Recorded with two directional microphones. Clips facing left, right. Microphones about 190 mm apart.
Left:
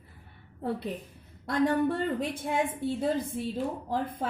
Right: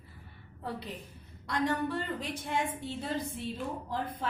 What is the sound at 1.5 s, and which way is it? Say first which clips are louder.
A woman's voice: left 6 dB; 50° left (ahead or behind).